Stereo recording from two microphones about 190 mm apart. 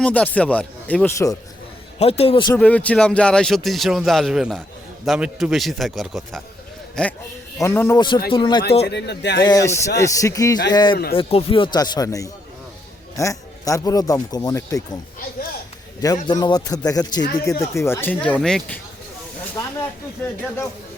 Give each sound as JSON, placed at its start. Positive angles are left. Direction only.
{"t": 0.0, "sound": "speech", "side_deg": 5}
{"t": 2.0, "sound": "a man's voice", "side_deg": 30}
{"t": 2.6, "sound": "speech", "side_deg": 5}
{"t": 8.9, "sound": "speech", "side_deg": 65}
{"t": 9.4, "sound": "speech", "side_deg": 20}
{"t": 16.2, "sound": "speech", "side_deg": 20}